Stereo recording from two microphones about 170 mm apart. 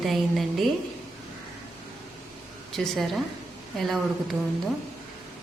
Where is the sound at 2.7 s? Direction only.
Centre (ahead or behind).